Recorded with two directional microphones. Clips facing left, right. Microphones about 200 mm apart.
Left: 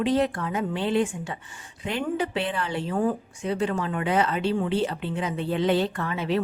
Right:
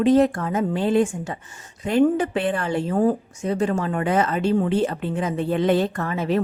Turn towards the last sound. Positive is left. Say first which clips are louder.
# right 4 dB
turn(degrees=-45)  # may be behind; listen again after turning